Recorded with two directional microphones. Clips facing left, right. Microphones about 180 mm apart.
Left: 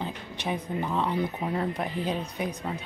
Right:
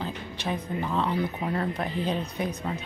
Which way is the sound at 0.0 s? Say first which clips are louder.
Right 1 dB; 15° left (ahead or behind).